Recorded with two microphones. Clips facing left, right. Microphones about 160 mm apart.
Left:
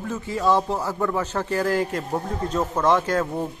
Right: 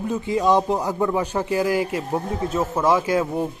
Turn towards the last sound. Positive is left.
turn(degrees=-10)  # may be behind; listen again after turning